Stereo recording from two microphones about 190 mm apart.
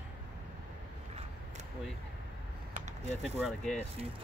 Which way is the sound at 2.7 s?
35° right (ahead or behind).